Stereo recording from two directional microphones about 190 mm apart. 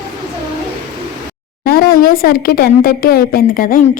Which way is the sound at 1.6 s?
50° left (ahead or behind).